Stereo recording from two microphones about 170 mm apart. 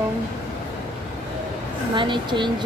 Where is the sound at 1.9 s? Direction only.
30° right (ahead or behind).